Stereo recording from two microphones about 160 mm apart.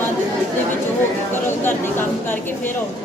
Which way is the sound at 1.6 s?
15° left (ahead or behind).